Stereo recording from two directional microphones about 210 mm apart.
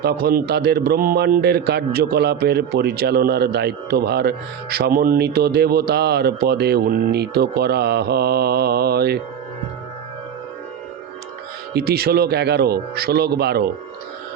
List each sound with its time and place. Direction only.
0.0 s a man's voice: 50° right (ahead or behind)
11.7 s a man's voice: 50° right (ahead or behind)